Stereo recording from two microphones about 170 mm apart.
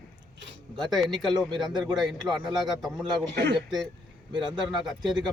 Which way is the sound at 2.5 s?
Centre (ahead or behind).